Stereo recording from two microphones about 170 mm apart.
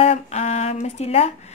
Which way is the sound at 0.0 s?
40° left (ahead or behind).